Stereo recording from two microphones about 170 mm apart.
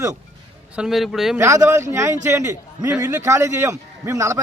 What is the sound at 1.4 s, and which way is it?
A man's voice, 15° right (ahead or behind).